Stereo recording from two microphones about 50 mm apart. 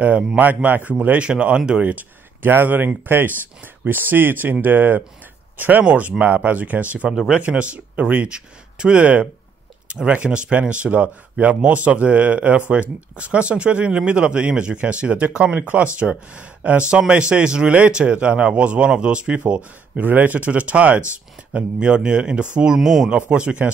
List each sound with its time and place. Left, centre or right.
0.4 s speech: right
1.2 s speech: centre
1.8 s speech: right
2.4 s speech: right
7.1 s speech: centre
7.4 s speech: right
8.3 s speech: right
15.5 s speech: right
16.0 s speech: right
17.6 s speech: right
20.0 s speech: right
22.8 s speech: centre
23.1 s speech: right